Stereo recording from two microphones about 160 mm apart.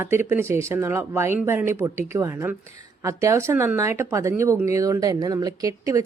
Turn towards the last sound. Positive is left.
turn(degrees=-20)  # may be behind; listen again after turning